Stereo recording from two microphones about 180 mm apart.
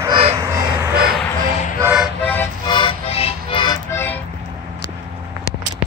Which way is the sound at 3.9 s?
10° left (ahead or behind).